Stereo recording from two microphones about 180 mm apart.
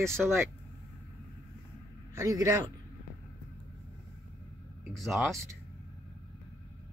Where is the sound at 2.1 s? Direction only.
15° right (ahead or behind).